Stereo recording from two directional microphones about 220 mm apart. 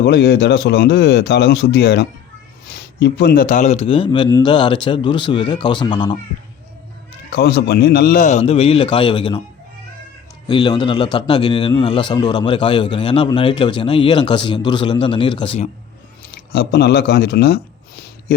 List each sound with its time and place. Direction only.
0.0 s a man's voice: 45° left (ahead or behind); by 6.1 s 20° left (ahead or behind)
7.3 s a man's voice: 45° left (ahead or behind); by 9.4 s 20° left (ahead or behind)
10.5 s a man's voice: 20° left (ahead or behind)
16.3 s a sound: 45° left (ahead or behind)